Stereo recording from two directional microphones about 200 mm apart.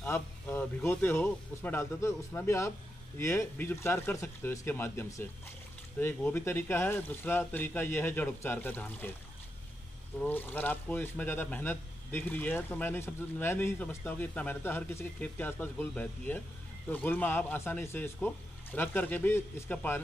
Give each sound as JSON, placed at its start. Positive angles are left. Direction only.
{"t": 0.0, "sound": "speech", "side_deg": 10}
{"t": 10.1, "sound": "speech", "side_deg": 10}